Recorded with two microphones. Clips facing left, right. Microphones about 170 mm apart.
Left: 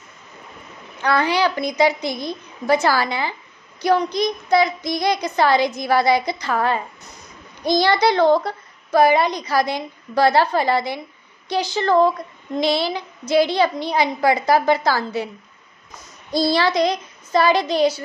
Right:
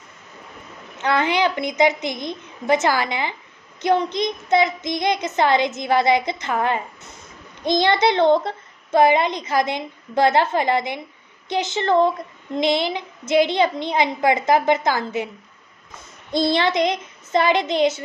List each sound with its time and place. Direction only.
1.0 s a child's voice: 20° right (ahead or behind)
16.3 s a child's voice: 20° right (ahead or behind)